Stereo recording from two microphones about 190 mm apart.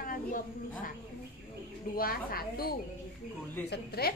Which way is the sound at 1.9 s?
50° left (ahead or behind).